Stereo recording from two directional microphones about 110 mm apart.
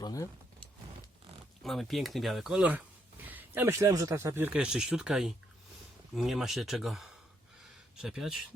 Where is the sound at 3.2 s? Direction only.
15° right (ahead or behind).